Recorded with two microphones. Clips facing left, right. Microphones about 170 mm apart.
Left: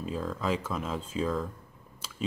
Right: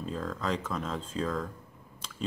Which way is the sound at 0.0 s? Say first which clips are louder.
Left 2 dB; 5° left (ahead or behind).